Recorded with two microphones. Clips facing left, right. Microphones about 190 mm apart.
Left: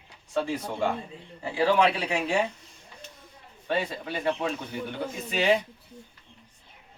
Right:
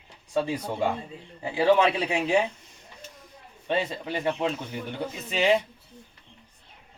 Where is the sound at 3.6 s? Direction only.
20° right (ahead or behind).